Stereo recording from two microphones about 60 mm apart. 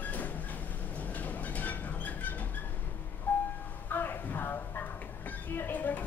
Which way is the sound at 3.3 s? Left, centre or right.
Left.